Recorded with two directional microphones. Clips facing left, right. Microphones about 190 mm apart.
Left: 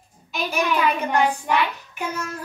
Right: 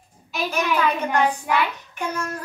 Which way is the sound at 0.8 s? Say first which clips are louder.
Even; 10° left (ahead or behind).